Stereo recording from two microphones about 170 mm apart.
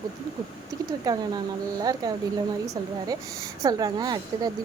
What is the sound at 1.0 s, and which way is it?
Speech, 25° right (ahead or behind).